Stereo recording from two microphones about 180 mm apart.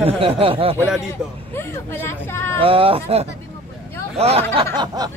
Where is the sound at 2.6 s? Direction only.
30° right (ahead or behind).